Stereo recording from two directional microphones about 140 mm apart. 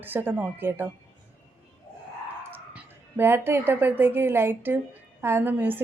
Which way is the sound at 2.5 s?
10° right (ahead or behind).